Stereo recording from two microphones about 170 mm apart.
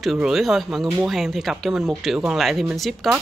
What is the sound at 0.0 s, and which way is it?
Speech, centre (ahead or behind).